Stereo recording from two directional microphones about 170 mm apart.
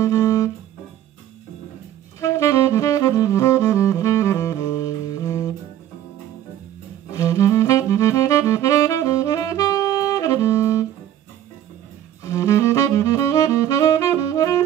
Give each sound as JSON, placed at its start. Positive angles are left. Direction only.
{"t": 0.0, "sound": "music", "side_deg": 20}
{"t": 2.1, "sound": "saxophone", "side_deg": 15}
{"t": 7.2, "sound": "saxophone", "side_deg": 20}
{"t": 12.2, "sound": "saxophone", "side_deg": 20}